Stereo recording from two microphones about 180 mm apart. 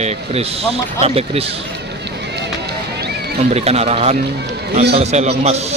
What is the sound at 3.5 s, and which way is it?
Speech, 35° right (ahead or behind).